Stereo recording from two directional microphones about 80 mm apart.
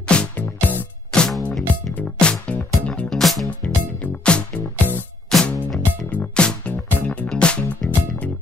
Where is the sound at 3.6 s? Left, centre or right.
Centre.